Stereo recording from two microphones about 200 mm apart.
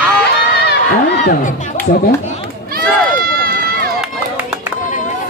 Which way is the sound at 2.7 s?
50° right (ahead or behind).